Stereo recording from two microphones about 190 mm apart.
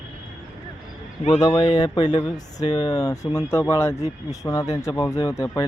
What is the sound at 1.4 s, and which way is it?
Speech, 25° left (ahead or behind).